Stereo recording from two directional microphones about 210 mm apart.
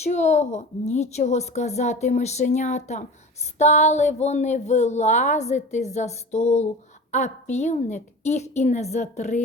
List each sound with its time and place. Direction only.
0.0 s speech: 35° left (ahead or behind)